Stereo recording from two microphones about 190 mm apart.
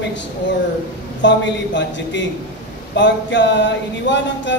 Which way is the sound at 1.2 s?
70° left (ahead or behind).